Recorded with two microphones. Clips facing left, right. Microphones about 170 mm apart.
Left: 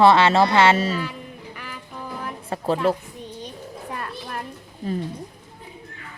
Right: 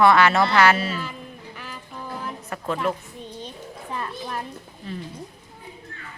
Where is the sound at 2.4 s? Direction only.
30° left (ahead or behind).